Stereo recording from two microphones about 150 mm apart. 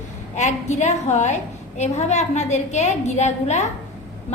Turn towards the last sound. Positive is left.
turn(degrees=50)  # may be behind; listen again after turning